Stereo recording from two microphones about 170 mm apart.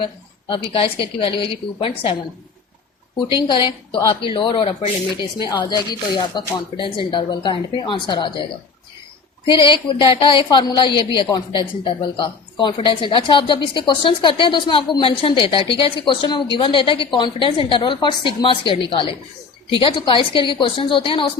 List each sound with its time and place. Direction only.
0.0 s a woman's voice: 30° left (ahead or behind)
3.2 s a woman's voice: 30° left (ahead or behind)
9.5 s a woman's voice: 30° left (ahead or behind)